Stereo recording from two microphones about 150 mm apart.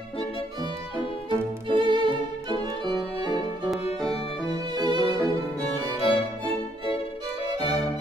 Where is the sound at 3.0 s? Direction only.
35° left (ahead or behind).